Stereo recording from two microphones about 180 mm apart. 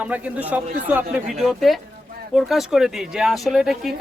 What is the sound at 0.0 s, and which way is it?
Speech, 5° right (ahead or behind).